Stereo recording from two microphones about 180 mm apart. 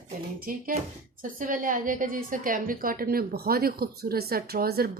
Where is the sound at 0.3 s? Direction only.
55° right (ahead or behind).